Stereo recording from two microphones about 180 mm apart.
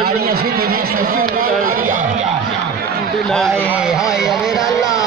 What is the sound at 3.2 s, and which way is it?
Speech, centre (ahead or behind).